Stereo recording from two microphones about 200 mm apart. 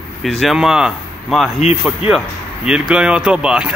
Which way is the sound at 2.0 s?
30° left (ahead or behind).